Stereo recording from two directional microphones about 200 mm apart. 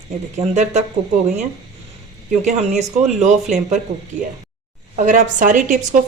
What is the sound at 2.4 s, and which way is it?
A woman's voice, 35° right (ahead or behind).